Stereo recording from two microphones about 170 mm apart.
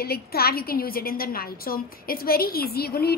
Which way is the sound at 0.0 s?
65° left (ahead or behind).